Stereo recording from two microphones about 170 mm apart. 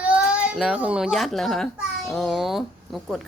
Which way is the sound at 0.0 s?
5° right (ahead or behind).